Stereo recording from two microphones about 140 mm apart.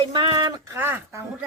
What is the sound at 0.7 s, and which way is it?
Speech, 15° right (ahead or behind).